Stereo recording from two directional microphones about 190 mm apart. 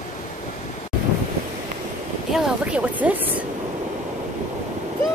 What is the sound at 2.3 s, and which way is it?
Speech, 5° right (ahead or behind).